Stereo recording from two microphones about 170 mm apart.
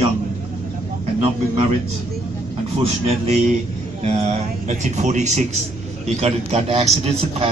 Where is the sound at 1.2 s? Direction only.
35° right (ahead or behind).